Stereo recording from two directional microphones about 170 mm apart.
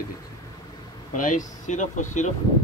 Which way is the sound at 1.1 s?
50° left (ahead or behind).